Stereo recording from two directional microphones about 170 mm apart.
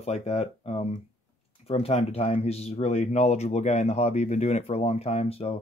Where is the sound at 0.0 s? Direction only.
40° left (ahead or behind).